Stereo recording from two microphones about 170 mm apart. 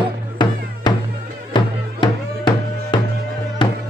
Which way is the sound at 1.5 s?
30° left (ahead or behind).